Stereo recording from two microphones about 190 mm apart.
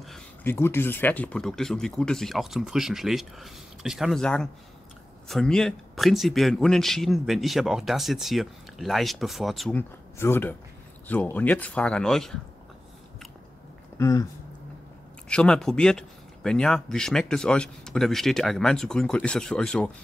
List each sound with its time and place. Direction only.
0.0 s speech: 5° left (ahead or behind)
13.9 s speech: 15° left (ahead or behind)
15.2 s speech: 5° left (ahead or behind)